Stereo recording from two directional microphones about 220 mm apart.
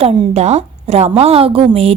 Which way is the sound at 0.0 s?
25° right (ahead or behind).